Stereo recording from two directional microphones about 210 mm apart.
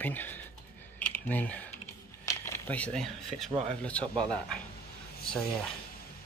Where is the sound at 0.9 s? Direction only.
10° left (ahead or behind).